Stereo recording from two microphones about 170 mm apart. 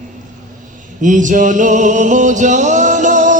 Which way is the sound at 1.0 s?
50° right (ahead or behind).